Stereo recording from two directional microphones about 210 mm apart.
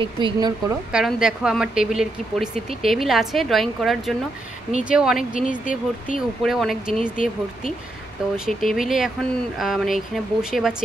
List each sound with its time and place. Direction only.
0.0 s speech: 20° right (ahead or behind)
0.9 s speech: 5° right (ahead or behind)
6.9 s speech: 40° left (ahead or behind)
8.5 s speech: centre (ahead or behind)